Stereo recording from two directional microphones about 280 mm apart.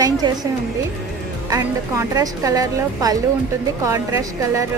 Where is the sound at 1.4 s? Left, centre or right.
Centre.